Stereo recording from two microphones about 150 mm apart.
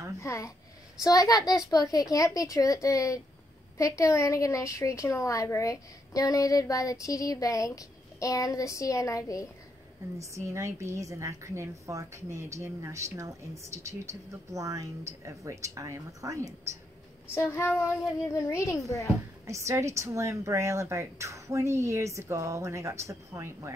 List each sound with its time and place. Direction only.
0.2 s a woman's voice: 20° left (ahead or behind)
10.1 s a woman's voice: 20° right (ahead or behind)
17.3 s a woman's voice: 15° left (ahead or behind)
19.4 s a woman's voice: 20° right (ahead or behind)